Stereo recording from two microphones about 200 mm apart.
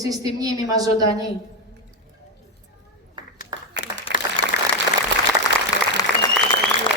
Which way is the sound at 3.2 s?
25° right (ahead or behind).